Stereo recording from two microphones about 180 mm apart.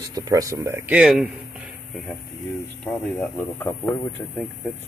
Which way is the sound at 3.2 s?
10° left (ahead or behind).